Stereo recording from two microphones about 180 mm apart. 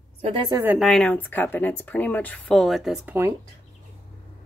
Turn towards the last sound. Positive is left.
turn(degrees=0)  # may be behind; listen again after turning